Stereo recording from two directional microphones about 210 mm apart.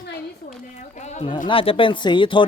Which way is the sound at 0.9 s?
35° left (ahead or behind).